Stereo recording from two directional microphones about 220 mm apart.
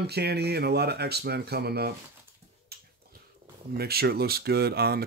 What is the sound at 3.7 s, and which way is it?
Speech, 45° right (ahead or behind).